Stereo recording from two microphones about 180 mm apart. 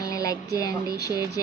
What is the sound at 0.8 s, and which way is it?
Speech, 60° right (ahead or behind).